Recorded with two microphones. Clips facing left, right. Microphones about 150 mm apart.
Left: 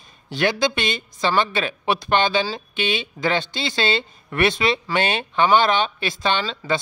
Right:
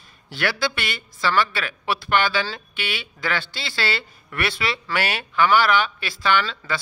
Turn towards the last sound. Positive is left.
turn(degrees=20)  # may be behind; listen again after turning